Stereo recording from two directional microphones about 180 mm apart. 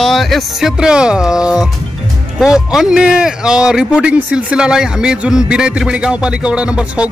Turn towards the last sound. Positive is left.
turn(degrees=-5)  # may be behind; listen again after turning